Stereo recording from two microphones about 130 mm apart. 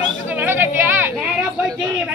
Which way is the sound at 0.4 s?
15° right (ahead or behind).